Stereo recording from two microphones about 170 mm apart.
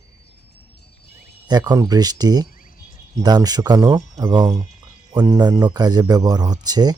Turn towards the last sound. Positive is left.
turn(degrees=-25)  # may be behind; listen again after turning